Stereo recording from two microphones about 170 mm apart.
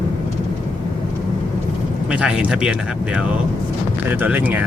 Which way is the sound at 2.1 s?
5° right (ahead or behind).